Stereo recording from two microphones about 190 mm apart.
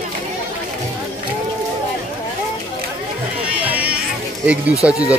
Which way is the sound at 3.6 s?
10° right (ahead or behind).